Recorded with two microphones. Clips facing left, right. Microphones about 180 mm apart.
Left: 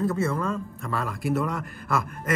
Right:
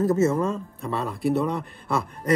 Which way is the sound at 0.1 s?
25° right (ahead or behind).